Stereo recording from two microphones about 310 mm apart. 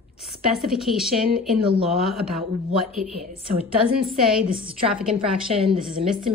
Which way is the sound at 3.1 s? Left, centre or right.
Centre.